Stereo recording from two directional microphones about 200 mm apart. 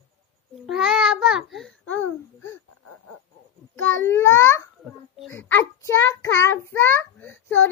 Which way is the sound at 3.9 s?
10° left (ahead or behind).